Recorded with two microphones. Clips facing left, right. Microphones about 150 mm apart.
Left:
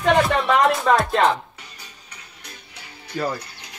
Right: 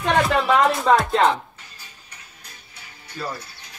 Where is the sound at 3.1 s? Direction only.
75° left (ahead or behind).